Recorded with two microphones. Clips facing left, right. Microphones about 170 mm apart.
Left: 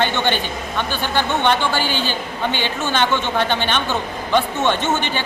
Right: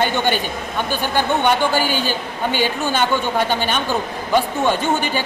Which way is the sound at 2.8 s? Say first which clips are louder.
Right 1 dB; 10° right (ahead or behind).